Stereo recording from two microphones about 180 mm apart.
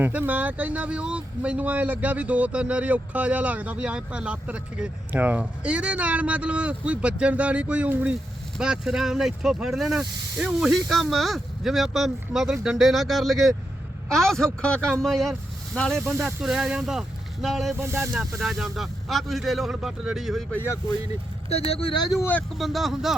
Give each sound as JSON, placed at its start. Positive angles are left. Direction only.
{"t": 0.0, "sound": "speech", "side_deg": -10}
{"t": 17.7, "sound": "speech", "side_deg": -15}
{"t": 18.2, "sound": "speech", "side_deg": 0}
{"t": 21.7, "sound": "speech", "side_deg": 30}
{"t": 22.1, "sound": "speech", "side_deg": 10}